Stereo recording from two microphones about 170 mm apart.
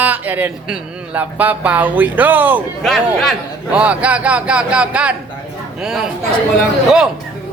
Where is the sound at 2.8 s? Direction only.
Centre (ahead or behind).